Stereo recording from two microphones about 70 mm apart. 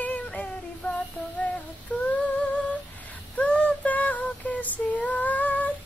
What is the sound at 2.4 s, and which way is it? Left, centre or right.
Humming, left.